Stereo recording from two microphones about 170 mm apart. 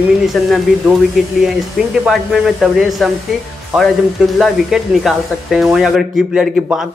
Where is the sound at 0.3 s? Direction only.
Centre (ahead or behind).